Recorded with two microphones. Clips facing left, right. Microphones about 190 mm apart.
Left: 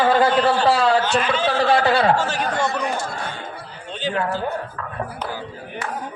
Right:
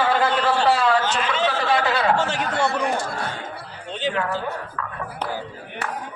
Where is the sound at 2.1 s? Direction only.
20° right (ahead or behind).